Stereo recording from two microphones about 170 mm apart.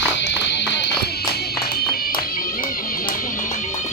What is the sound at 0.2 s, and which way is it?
Music, 90° left.